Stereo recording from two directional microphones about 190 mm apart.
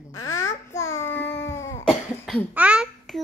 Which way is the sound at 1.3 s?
15° left (ahead or behind).